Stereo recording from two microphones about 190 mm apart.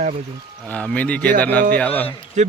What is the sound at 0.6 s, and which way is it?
Speech, 5° left (ahead or behind).